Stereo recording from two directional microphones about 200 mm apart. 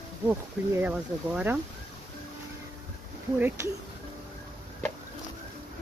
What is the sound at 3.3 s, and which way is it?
Speech, 10° right (ahead or behind).